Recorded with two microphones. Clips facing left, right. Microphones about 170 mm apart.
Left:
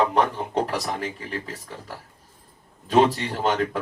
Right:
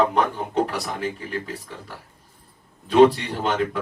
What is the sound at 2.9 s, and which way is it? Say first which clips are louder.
Speech: right 4 dB; 40° left (ahead or behind).